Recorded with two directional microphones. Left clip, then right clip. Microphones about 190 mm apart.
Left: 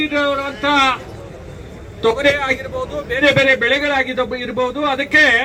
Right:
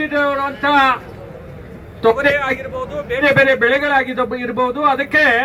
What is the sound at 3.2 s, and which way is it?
A man's voice, 30° right (ahead or behind).